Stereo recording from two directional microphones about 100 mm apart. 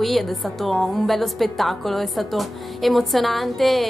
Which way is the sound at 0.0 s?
Centre (ahead or behind).